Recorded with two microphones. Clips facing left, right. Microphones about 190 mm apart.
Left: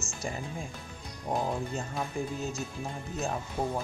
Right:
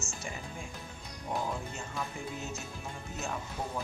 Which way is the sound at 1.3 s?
35° left (ahead or behind).